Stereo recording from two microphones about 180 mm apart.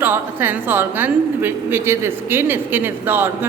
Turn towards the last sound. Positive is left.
turn(degrees=-10)  # may be behind; listen again after turning